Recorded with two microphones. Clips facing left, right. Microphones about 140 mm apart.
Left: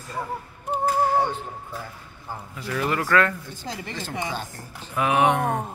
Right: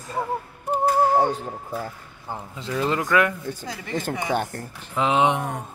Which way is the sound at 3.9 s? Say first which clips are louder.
Right 7 dB; 55° right (ahead or behind).